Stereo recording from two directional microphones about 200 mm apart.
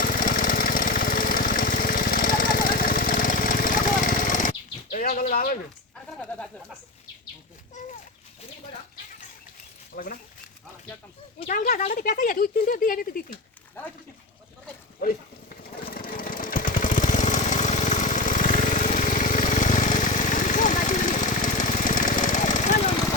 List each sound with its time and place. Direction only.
0.0 s lawn mower: 45° left (ahead or behind)
5.3 s bird: 45° left (ahead or behind)
9.9 s speech: 45° left (ahead or behind)
11.4 s speech: 45° left (ahead or behind)
15.9 s lawn mower: 45° left (ahead or behind)